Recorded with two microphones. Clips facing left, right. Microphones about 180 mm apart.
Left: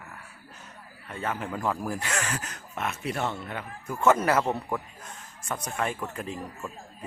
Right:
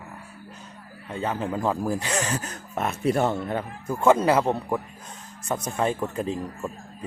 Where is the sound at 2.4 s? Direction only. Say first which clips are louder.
Right 5 dB; 35° right (ahead or behind).